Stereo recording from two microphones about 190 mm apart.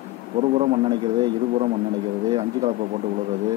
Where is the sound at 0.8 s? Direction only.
25° right (ahead or behind).